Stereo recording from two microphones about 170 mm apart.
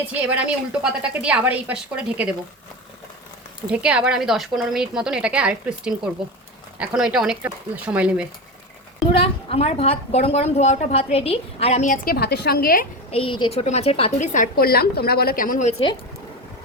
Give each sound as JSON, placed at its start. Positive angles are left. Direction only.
{"t": 0.0, "sound": "a woman's voice", "side_deg": -10}
{"t": 3.7, "sound": "a woman's voice", "side_deg": -5}
{"t": 9.1, "sound": "a woman's voice", "side_deg": 35}
{"t": 13.1, "sound": "a woman's voice", "side_deg": 35}
{"t": 14.3, "sound": "a woman's voice", "side_deg": 60}